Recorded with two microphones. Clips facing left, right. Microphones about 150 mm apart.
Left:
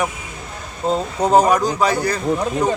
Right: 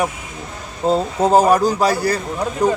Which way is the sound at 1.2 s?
5° right (ahead or behind).